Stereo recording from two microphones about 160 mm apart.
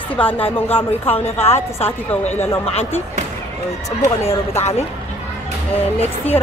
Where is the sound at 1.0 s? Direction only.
40° left (ahead or behind).